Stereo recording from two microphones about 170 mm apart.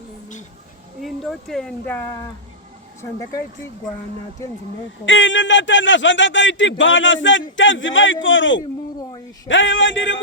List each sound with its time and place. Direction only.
1.0 s speech: centre (ahead or behind); by 3.4 s 20° left (ahead or behind)
5.0 s a man's voice: 90° left